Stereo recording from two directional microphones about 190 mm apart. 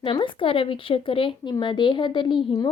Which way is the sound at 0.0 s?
25° left (ahead or behind).